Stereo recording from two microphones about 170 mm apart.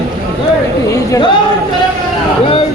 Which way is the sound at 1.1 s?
30° left (ahead or behind).